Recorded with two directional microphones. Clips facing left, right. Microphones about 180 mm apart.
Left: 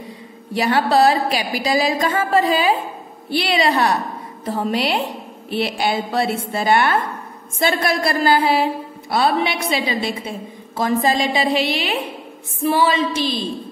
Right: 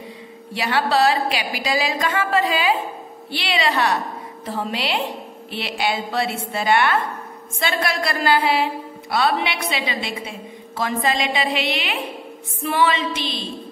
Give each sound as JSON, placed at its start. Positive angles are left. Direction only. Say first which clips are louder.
{"t": 0.6, "sound": "a woman's voice", "louder": "left 4 dB", "side_deg": 45}